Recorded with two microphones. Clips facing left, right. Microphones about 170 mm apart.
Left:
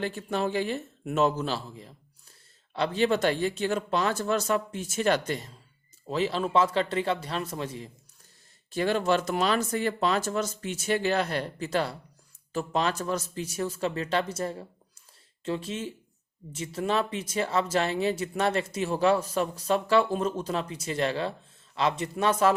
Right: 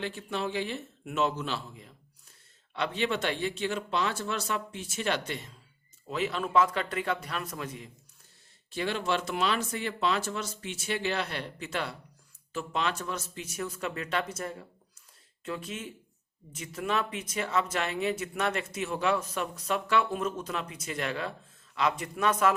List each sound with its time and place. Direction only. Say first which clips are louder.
0.0 s a man's voice: left 4 dB; 45° left (ahead or behind)
8.7 s a man's voice: left 5 dB; 45° left (ahead or behind)